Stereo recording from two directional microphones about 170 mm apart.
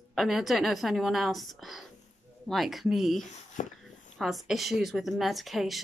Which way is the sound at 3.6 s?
45° left (ahead or behind).